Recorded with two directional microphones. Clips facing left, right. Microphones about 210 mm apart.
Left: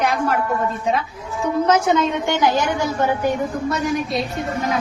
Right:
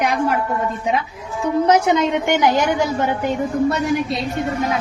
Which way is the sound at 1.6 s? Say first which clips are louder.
Right 1 dB; 15° right (ahead or behind).